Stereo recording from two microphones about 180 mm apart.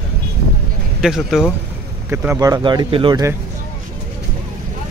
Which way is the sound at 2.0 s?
15° right (ahead or behind).